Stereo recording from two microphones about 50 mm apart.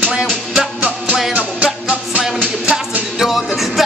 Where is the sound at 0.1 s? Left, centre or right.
Centre.